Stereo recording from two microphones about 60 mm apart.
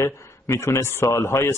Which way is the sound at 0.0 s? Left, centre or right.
Left.